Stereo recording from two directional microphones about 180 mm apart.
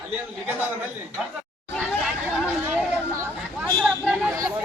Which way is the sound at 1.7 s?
5° right (ahead or behind).